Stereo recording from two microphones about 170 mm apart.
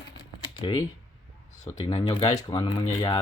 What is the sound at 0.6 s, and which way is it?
Speech, 35° left (ahead or behind).